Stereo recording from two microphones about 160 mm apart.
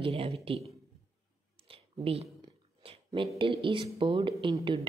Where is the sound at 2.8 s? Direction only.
35° right (ahead or behind).